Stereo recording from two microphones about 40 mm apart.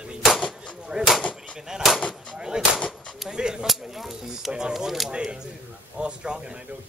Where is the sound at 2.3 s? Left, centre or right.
Centre.